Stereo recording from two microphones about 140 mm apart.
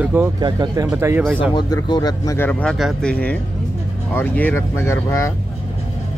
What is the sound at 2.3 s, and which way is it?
Speech, 15° left (ahead or behind).